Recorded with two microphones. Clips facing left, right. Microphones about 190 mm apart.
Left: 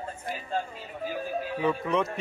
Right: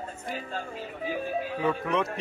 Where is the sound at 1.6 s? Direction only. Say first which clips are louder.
Left 1 dB; centre (ahead or behind).